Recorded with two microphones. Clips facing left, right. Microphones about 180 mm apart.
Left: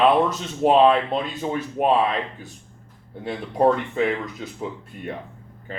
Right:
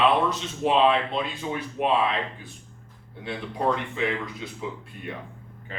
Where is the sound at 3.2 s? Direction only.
45° left (ahead or behind).